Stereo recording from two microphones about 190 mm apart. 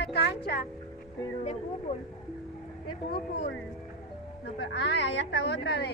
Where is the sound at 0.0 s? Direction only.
60° left (ahead or behind).